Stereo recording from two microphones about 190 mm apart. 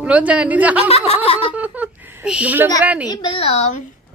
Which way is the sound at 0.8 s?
30° left (ahead or behind).